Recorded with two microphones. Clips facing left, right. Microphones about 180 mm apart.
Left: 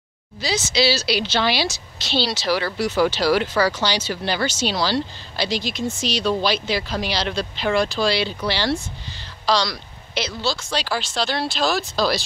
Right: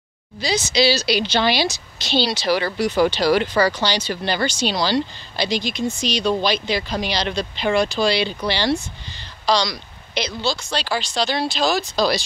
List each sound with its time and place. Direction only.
0.4 s speech: 5° left (ahead or behind)